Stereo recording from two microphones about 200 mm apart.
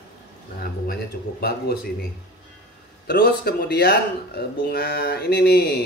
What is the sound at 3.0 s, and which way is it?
Speech, 50° left (ahead or behind).